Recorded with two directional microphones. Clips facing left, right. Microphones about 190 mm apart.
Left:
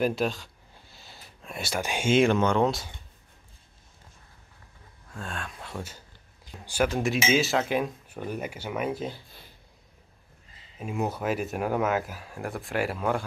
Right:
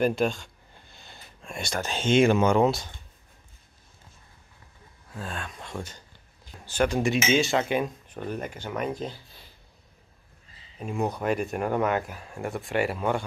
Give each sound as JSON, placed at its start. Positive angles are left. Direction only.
{"t": 0.0, "sound": "a sound", "side_deg": 0}
{"t": 2.1, "sound": "speech", "side_deg": -5}
{"t": 5.1, "sound": "speech", "side_deg": 0}
{"t": 10.8, "sound": "speech", "side_deg": 5}